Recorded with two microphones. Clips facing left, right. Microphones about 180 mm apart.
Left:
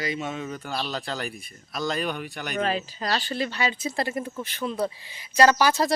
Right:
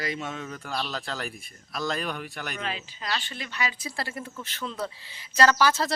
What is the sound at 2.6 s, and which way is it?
Speech, 40° left (ahead or behind).